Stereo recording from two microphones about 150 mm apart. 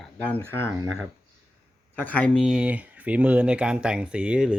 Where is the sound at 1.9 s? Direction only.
10° left (ahead or behind).